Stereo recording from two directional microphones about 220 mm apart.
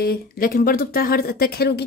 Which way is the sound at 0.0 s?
45° left (ahead or behind).